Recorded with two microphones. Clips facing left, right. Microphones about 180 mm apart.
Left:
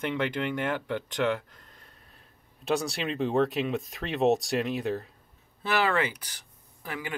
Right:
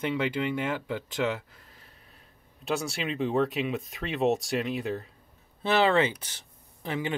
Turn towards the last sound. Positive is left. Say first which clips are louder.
# right 5 dB
turn(degrees=-25)  # may be behind; listen again after turning